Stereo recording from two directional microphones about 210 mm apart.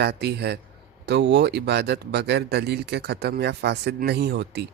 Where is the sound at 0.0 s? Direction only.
50° right (ahead or behind).